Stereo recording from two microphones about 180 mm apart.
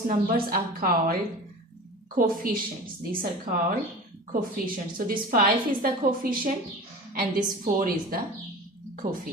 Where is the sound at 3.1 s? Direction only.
50° right (ahead or behind).